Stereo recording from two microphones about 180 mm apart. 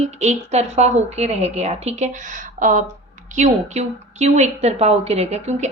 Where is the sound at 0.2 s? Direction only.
40° right (ahead or behind).